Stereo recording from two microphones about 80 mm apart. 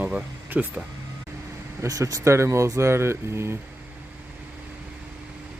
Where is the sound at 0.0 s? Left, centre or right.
Centre.